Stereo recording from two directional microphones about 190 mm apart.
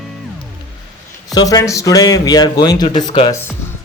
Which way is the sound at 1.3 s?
20° left (ahead or behind).